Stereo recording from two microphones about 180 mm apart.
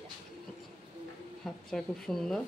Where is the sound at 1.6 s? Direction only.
5° left (ahead or behind).